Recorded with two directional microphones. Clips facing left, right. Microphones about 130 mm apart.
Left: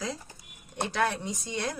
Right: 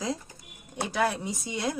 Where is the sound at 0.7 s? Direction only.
5° right (ahead or behind).